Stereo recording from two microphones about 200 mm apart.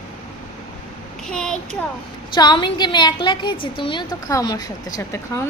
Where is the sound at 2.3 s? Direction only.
20° left (ahead or behind).